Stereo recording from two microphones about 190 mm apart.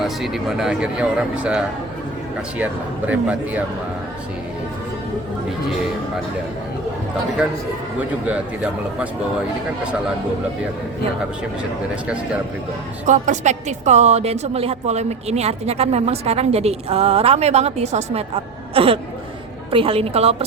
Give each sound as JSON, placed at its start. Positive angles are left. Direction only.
{"t": 0.0, "sound": "speech", "side_deg": 0}
{"t": 3.1, "sound": "a man's voice", "side_deg": -10}
{"t": 13.1, "sound": "a woman's voice", "side_deg": -40}